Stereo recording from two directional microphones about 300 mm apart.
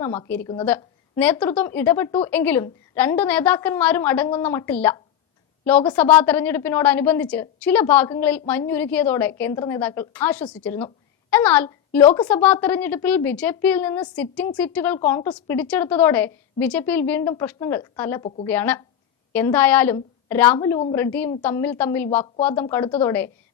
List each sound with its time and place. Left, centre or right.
0.0 s a woman's voice: centre
18.2 s a woman's voice: left
18.4 s a woman's voice: centre